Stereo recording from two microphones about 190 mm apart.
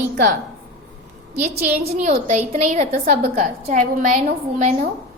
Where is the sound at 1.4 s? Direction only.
35° right (ahead or behind).